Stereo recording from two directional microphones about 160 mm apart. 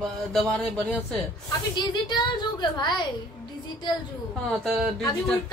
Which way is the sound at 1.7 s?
30° left (ahead or behind).